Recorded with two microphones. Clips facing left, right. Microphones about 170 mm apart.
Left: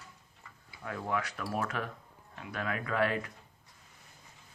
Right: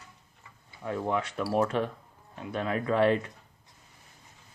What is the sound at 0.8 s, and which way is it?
Speech, 25° right (ahead or behind).